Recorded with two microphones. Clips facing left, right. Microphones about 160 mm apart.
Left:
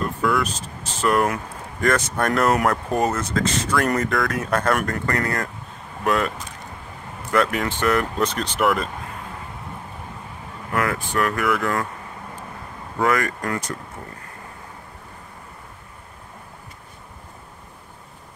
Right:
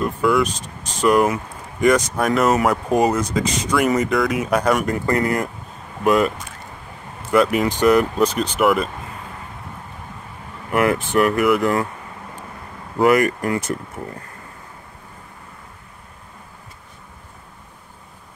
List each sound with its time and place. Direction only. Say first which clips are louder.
0.0 s speech: right 4 dB; centre (ahead or behind)
5.0 s speech: right 5 dB; 15° right (ahead or behind)
10.7 s speech: right 6 dB; 20° right (ahead or behind)
13.0 s speech: right 6 dB; 20° right (ahead or behind)